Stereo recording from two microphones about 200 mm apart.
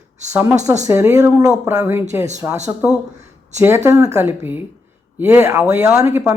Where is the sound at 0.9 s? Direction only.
15° right (ahead or behind).